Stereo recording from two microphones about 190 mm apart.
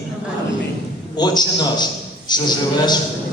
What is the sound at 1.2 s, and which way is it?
A man's voice, 20° left (ahead or behind).